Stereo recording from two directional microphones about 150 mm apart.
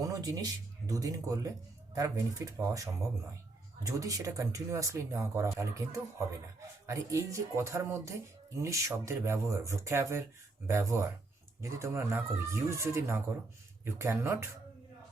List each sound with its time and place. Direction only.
0.0 s speech: 25° right (ahead or behind)